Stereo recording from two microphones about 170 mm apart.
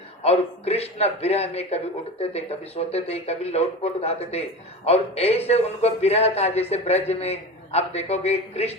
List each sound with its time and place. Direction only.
0.2 s a man's voice: 35° left (ahead or behind)